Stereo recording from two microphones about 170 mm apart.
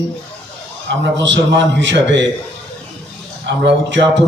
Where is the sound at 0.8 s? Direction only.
90° right.